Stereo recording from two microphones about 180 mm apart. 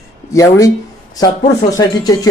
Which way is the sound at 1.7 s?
20° left (ahead or behind).